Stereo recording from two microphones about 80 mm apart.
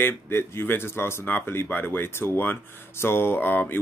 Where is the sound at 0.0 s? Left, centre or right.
Left.